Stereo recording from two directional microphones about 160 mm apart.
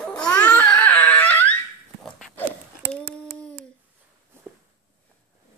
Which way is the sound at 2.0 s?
5° left (ahead or behind).